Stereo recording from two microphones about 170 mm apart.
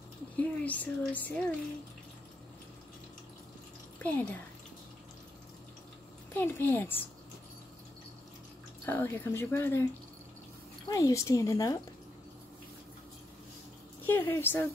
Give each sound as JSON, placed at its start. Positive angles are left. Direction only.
{"t": 0.4, "sound": "speech", "side_deg": 10}
{"t": 4.0, "sound": "speech", "side_deg": 10}
{"t": 6.3, "sound": "speech", "side_deg": 10}
{"t": 8.8, "sound": "speech", "side_deg": 10}
{"t": 10.9, "sound": "speech", "side_deg": 20}
{"t": 14.0, "sound": "speech", "side_deg": 15}